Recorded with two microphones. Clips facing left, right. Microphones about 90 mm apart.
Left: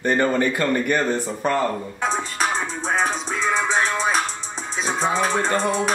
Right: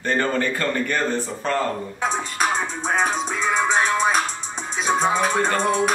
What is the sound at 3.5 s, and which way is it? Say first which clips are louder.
Music: right 3 dB; centre (ahead or behind).